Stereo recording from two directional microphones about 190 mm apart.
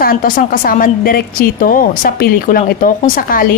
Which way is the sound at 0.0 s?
50° left (ahead or behind).